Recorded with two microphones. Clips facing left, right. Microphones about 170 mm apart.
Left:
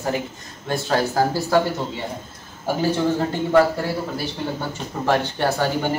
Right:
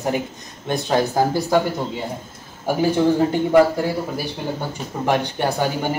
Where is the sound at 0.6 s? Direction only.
20° right (ahead or behind).